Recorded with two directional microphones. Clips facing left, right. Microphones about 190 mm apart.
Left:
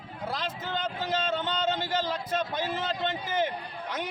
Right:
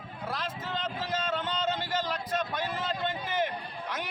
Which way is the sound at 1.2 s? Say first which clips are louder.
Left 2 dB; 25° left (ahead or behind).